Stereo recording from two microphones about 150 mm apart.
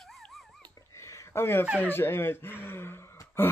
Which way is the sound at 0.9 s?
20° left (ahead or behind).